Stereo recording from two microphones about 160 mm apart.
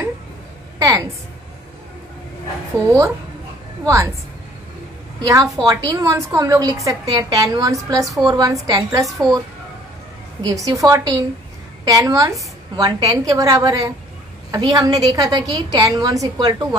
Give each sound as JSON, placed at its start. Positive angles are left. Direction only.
{"t": 0.7, "sound": "a sound", "side_deg": -20}
{"t": 3.8, "sound": "a woman's voice", "side_deg": -20}
{"t": 5.2, "sound": "a woman's voice", "side_deg": -20}
{"t": 10.5, "sound": "a woman's voice", "side_deg": -20}